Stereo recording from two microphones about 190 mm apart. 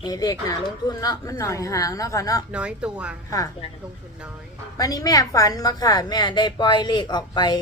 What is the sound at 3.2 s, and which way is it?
Speech, 15° left (ahead or behind).